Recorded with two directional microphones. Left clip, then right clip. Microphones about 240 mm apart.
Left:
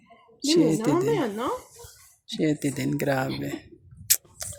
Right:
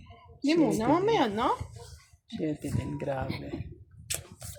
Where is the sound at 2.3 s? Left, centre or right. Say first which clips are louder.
Left 8 dB; left.